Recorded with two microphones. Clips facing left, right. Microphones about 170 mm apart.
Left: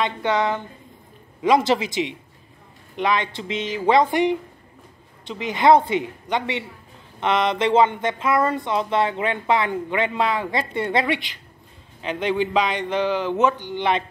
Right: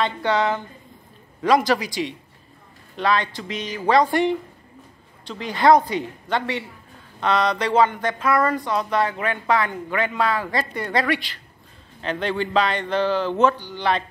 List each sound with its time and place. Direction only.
0.0 s speech: 20° left (ahead or behind)